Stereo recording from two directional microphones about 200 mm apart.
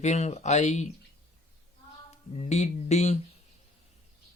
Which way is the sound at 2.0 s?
35° left (ahead or behind).